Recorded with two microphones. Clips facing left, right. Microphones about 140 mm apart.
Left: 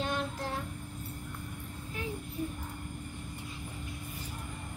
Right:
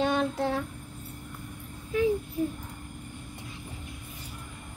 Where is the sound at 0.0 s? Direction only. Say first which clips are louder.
Right 8 dB; 80° right.